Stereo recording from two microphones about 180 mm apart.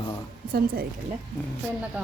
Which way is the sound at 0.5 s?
55° right (ahead or behind).